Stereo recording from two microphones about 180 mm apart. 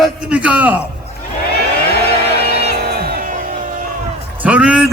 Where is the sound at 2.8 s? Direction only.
65° right (ahead or behind).